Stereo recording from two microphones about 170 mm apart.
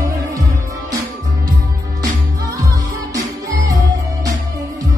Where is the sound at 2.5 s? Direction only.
20° right (ahead or behind).